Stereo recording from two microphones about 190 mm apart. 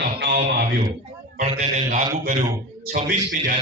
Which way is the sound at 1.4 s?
35° right (ahead or behind).